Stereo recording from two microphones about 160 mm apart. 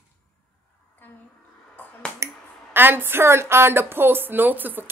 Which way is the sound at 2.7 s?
15° right (ahead or behind).